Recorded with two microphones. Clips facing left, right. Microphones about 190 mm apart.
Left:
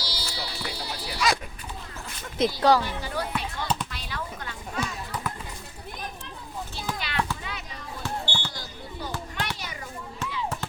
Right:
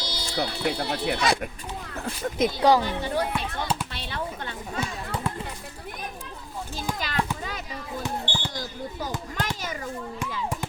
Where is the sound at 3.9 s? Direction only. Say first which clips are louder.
Right 3 dB; 30° right (ahead or behind).